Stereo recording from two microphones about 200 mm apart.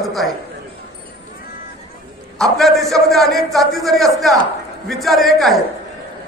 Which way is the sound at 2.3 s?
Centre (ahead or behind).